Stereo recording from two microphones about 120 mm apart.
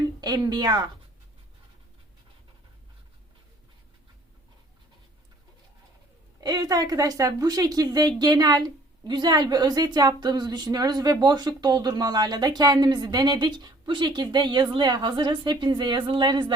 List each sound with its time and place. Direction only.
0.2 s a woman's voice: 30° right (ahead or behind)
6.4 s a woman's voice: 35° right (ahead or behind)